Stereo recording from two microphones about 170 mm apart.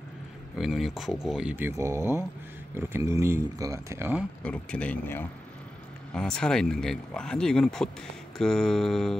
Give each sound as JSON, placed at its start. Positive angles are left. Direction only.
{"t": 0.6, "sound": "speech", "side_deg": 0}
{"t": 4.4, "sound": "a man's voice", "side_deg": 5}